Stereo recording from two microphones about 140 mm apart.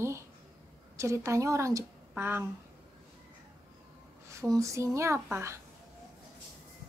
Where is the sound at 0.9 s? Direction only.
20° right (ahead or behind).